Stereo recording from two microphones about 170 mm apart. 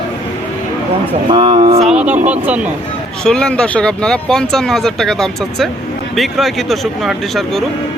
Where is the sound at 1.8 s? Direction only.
5° right (ahead or behind).